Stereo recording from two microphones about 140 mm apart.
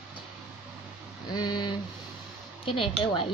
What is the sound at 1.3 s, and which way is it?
Speech, 30° left (ahead or behind).